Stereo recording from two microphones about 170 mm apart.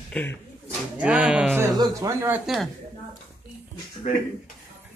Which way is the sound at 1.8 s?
20° right (ahead or behind).